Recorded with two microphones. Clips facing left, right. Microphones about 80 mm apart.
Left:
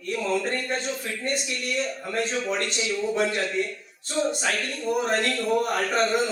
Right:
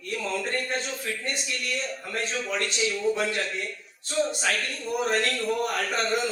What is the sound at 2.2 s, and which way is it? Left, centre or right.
Speech, left.